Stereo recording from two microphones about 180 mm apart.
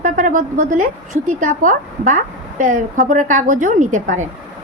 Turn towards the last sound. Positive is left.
turn(degrees=-45)  # may be behind; listen again after turning